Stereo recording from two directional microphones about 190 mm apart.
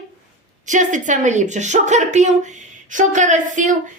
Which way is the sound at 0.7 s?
40° right (ahead or behind).